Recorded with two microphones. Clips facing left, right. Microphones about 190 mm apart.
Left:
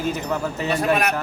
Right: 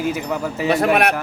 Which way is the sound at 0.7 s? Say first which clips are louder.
Right 4 dB; 65° right (ahead or behind).